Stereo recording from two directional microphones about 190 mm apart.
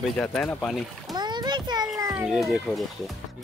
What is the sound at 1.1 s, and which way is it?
Splash, 20° right (ahead or behind).